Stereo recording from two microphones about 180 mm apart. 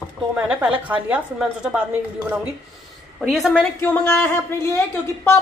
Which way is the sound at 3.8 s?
10° left (ahead or behind).